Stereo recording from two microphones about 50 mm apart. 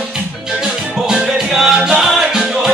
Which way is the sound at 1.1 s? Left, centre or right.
Centre.